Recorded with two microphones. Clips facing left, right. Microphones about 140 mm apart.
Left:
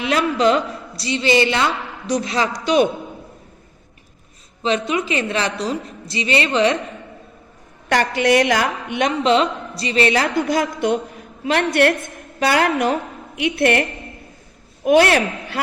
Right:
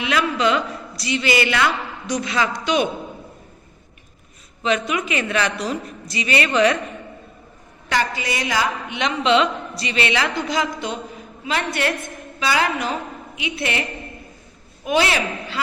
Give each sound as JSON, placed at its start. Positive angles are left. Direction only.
{"t": 0.0, "sound": "a man's voice", "side_deg": 35}
{"t": 4.9, "sound": "a woman's voice", "side_deg": 30}
{"t": 8.1, "sound": "a woman's voice", "side_deg": 70}
{"t": 14.8, "sound": "a man's voice", "side_deg": 55}